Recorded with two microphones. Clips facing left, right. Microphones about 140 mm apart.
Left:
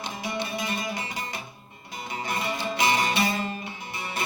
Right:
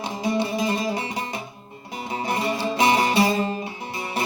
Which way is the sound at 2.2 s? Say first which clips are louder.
Right 5 dB; 30° right (ahead or behind).